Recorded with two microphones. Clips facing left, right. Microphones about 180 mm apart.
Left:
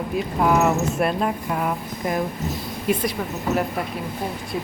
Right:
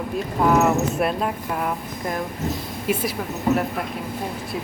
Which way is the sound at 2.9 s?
5° right (ahead or behind).